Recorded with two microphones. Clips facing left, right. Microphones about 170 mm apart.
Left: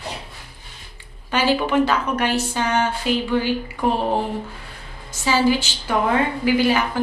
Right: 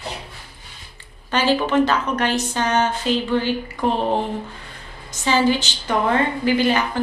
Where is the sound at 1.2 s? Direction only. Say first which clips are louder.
Even; 10° left (ahead or behind).